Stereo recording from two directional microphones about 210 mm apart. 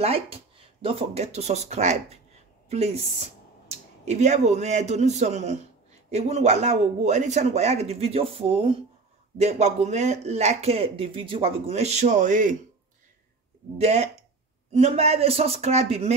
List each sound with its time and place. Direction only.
0.0 s speech: 30° right (ahead or behind)
4.0 s speech: 35° right (ahead or behind)
13.7 s speech: 30° right (ahead or behind)